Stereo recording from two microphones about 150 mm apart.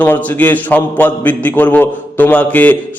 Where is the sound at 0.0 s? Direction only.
10° left (ahead or behind).